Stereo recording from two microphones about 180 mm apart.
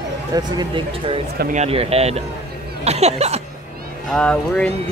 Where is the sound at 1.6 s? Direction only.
35° right (ahead or behind).